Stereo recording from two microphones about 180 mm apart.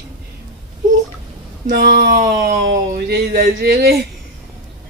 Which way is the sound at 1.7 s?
65° right (ahead or behind).